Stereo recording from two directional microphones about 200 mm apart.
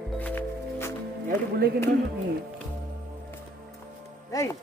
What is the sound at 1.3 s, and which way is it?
Speech, 50° right (ahead or behind).